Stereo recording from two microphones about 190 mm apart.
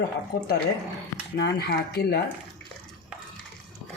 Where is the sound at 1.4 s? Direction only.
60° left (ahead or behind).